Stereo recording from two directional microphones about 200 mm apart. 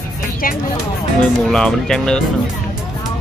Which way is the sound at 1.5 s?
5° left (ahead or behind).